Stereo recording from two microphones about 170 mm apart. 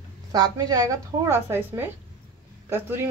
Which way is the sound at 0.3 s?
25° right (ahead or behind).